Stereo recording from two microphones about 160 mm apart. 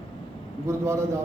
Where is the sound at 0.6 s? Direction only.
20° right (ahead or behind).